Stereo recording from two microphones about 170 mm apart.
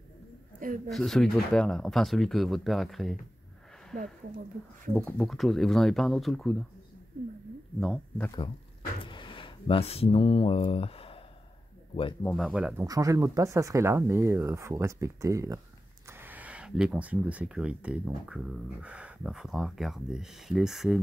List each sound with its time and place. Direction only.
0.8 s speech: centre (ahead or behind)
4.9 s speech: centre (ahead or behind)
7.8 s speech: centre (ahead or behind)
9.0 s speech: 30° left (ahead or behind)
12.4 s speech: 5° right (ahead or behind)
12.8 s speech: 20° right (ahead or behind); by 21.0 s centre (ahead or behind)